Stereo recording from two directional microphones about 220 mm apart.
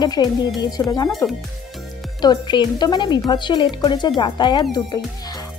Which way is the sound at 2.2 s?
20° left (ahead or behind).